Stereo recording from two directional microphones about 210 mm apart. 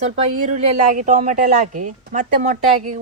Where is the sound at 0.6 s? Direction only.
35° right (ahead or behind).